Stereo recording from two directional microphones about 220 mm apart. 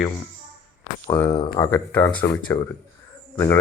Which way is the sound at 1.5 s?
10° left (ahead or behind).